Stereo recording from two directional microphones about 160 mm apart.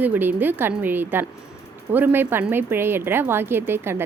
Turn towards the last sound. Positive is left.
turn(degrees=-15)  # may be behind; listen again after turning